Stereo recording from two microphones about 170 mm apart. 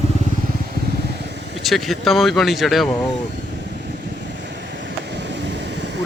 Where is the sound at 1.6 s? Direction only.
Centre (ahead or behind).